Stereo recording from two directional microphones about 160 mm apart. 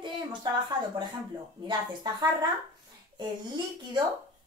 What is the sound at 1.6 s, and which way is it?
Speech, 25° right (ahead or behind).